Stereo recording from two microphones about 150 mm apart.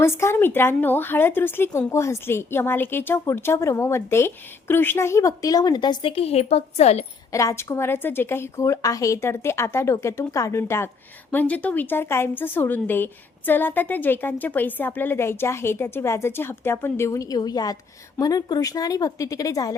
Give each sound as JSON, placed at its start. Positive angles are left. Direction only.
{"t": 0.0, "sound": "a woman's voice", "side_deg": 15}
{"t": 7.3, "sound": "a woman's voice", "side_deg": 20}